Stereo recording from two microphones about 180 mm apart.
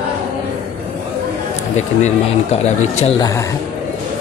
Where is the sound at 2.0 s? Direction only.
35° left (ahead or behind).